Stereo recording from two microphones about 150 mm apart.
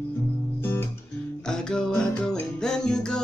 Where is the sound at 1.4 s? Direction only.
5° left (ahead or behind).